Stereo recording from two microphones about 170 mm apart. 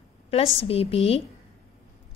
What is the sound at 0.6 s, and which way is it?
Speech, 35° left (ahead or behind).